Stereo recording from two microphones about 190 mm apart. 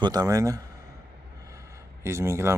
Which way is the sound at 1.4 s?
15° right (ahead or behind).